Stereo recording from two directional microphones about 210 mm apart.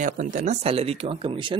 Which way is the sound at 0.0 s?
35° right (ahead or behind).